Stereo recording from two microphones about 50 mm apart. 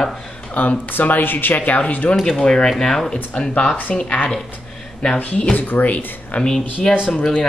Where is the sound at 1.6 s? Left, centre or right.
Left.